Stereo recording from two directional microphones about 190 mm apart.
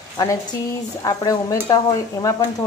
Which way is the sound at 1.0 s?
20° left (ahead or behind).